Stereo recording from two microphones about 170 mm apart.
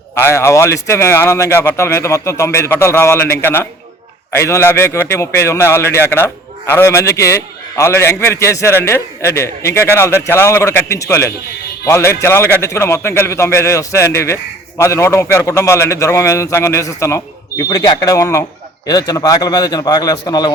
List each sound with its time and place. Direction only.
0.1 s a man's voice: 15° left (ahead or behind)